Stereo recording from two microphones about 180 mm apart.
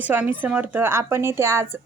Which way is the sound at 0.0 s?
10° right (ahead or behind).